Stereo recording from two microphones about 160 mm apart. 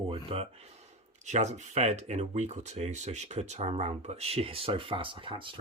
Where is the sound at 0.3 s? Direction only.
40° right (ahead or behind).